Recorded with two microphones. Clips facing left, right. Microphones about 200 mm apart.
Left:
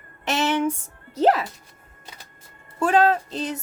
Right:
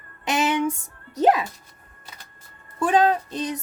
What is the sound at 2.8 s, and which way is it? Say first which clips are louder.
Speech: even; 15° right (ahead or behind).